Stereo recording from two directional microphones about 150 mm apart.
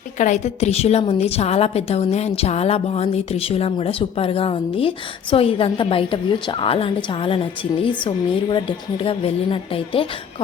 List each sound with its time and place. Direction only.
0.2 s a woman's voice: 55° left (ahead or behind); by 10.1 s 35° left (ahead or behind)